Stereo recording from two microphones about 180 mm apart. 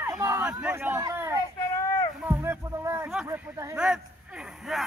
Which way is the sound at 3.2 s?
15° right (ahead or behind).